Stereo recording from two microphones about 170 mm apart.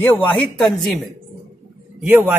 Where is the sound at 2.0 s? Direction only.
10° right (ahead or behind).